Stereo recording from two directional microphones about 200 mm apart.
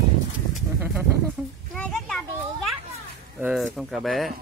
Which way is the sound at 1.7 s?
5° left (ahead or behind).